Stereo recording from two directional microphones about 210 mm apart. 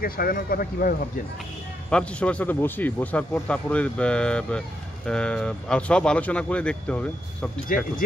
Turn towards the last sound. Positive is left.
turn(degrees=40)  # may be behind; listen again after turning